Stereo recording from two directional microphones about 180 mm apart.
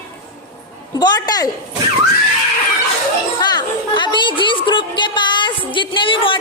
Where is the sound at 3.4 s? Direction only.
25° left (ahead or behind).